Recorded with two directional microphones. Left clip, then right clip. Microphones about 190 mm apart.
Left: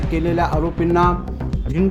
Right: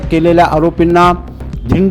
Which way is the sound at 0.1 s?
30° right (ahead or behind).